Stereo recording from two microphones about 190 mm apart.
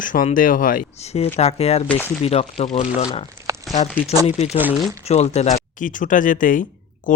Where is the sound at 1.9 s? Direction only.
10° left (ahead or behind).